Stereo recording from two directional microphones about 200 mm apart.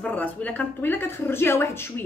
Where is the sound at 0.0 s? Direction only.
10° left (ahead or behind).